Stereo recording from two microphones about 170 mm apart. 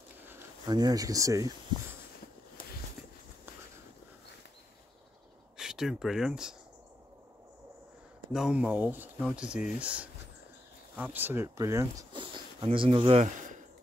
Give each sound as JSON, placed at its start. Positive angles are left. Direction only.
{"t": 0.7, "sound": "speech", "side_deg": -25}
{"t": 5.6, "sound": "speech", "side_deg": -5}
{"t": 8.3, "sound": "speech", "side_deg": -5}